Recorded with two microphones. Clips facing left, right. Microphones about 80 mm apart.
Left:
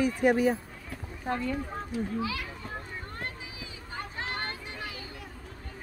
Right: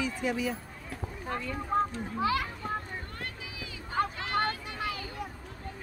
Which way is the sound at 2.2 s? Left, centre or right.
Right.